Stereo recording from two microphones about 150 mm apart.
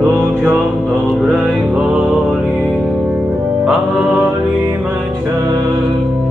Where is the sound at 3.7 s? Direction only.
10° right (ahead or behind).